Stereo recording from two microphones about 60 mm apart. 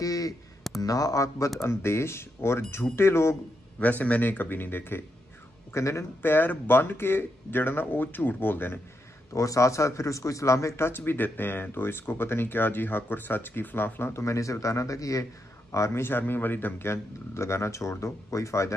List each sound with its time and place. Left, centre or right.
0.0 s a sound: left
0.8 s speech: left
1.6 s speech: left
3.8 s speech: left
5.7 s a man's voice: left
6.2 s speech: left
9.3 s a man's voice: left
10.9 s speech: left
14.1 s a man's voice: left
15.7 s a man's voice: left
16.0 s speech: left